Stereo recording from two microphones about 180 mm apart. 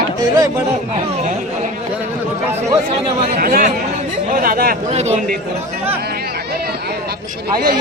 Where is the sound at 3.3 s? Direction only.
55° right (ahead or behind).